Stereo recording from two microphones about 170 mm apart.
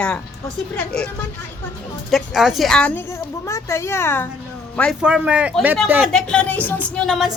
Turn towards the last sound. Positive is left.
turn(degrees=0)  # may be behind; listen again after turning